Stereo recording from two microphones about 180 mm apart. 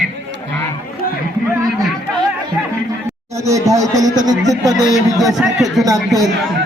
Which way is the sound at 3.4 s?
20° right (ahead or behind).